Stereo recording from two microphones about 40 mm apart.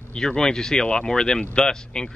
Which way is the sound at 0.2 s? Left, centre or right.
Centre.